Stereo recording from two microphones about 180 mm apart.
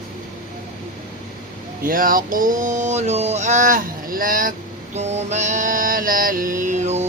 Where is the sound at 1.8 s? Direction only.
50° right (ahead or behind).